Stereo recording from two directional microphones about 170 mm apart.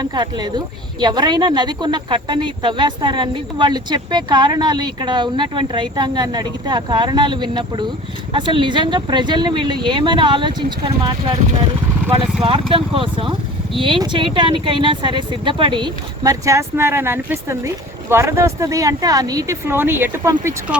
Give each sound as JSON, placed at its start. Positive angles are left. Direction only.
{"t": 0.0, "sound": "speech", "side_deg": -25}
{"t": 12.4, "sound": "speech", "side_deg": -35}